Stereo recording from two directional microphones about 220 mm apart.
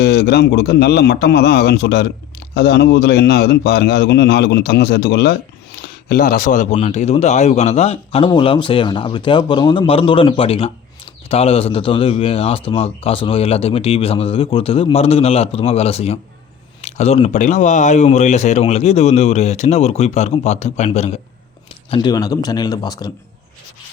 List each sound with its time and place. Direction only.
0.0 s a man's voice: 45° left (ahead or behind); by 23.1 s 20° left (ahead or behind)